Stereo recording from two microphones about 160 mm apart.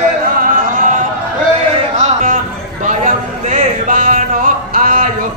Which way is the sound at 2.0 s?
45° right (ahead or behind).